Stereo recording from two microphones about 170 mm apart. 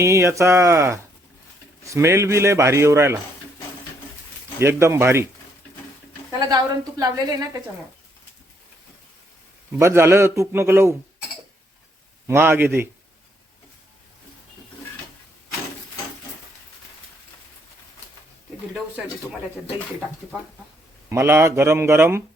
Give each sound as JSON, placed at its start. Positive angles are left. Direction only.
{"t": 0.0, "sound": "a man's voice", "side_deg": -15}
{"t": 4.6, "sound": "a man's voice", "side_deg": -15}
{"t": 6.4, "sound": "a woman's voice", "side_deg": -20}
{"t": 9.7, "sound": "a man's voice", "side_deg": -15}
{"t": 12.3, "sound": "a man's voice", "side_deg": -15}
{"t": 21.1, "sound": "a man's voice", "side_deg": -15}